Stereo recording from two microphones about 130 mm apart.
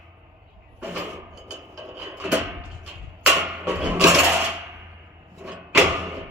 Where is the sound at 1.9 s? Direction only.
10° right (ahead or behind).